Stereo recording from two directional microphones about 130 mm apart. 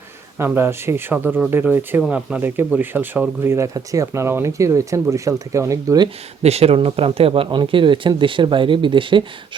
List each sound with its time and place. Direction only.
0.3 s speech: 15° right (ahead or behind)
6.4 s speech: 55° right (ahead or behind)